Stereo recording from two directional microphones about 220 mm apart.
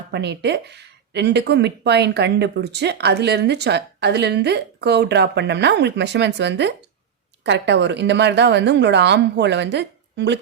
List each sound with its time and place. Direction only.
0.1 s speech: 50° right (ahead or behind)